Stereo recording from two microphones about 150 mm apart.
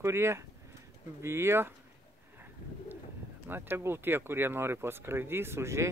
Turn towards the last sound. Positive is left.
turn(degrees=-20)  # may be behind; listen again after turning